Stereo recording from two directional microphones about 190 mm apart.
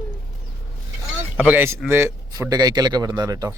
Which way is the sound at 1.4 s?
10° right (ahead or behind).